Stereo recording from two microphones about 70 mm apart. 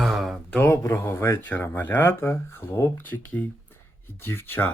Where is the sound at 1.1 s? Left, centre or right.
Left.